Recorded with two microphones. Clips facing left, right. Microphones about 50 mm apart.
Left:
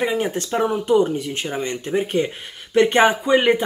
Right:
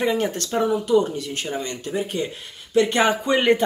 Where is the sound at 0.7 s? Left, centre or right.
Left.